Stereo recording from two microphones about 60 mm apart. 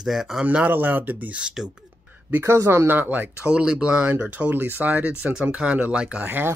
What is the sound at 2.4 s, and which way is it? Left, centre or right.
Speech, right.